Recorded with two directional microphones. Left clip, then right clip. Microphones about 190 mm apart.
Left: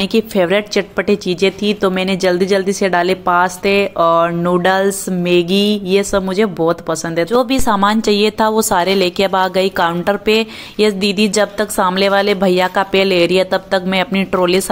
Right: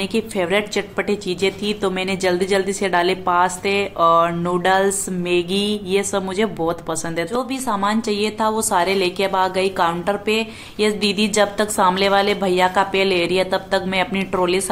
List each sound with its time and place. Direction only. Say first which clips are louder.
0.0 s a woman's voice: left 7 dB; 30° left (ahead or behind)
7.5 s a woman's voice: left 7 dB; 35° left (ahead or behind)